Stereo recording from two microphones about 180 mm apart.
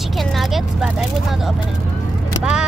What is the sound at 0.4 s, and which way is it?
Vehicle, centre (ahead or behind).